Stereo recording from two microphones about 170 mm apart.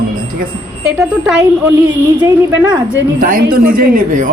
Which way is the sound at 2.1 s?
20° right (ahead or behind).